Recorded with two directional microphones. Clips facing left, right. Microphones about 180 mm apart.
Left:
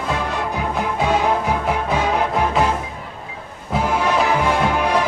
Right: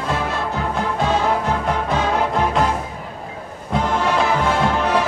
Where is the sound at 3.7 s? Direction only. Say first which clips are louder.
Even; 5° left (ahead or behind).